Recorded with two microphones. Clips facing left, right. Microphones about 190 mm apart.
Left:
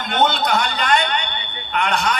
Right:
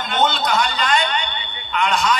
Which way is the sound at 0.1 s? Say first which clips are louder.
Left 1 dB; 60° left (ahead or behind).